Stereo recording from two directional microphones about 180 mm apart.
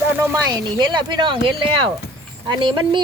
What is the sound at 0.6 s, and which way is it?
A woman's voice, 25° right (ahead or behind).